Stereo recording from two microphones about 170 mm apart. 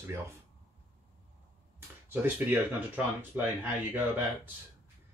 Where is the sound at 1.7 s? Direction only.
10° right (ahead or behind).